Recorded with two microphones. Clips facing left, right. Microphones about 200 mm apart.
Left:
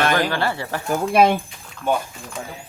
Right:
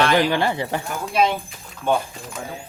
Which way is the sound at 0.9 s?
55° left (ahead or behind).